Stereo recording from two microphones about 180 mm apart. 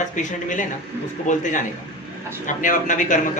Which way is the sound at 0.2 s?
45° left (ahead or behind).